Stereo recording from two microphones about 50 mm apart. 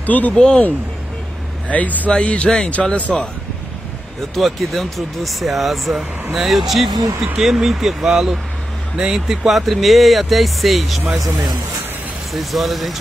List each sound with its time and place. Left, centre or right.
0.0 s speech: left
0.3 s speech: centre
1.7 s speech: left
2.0 s speech: left
4.4 s speech: centre
12.3 s speech: centre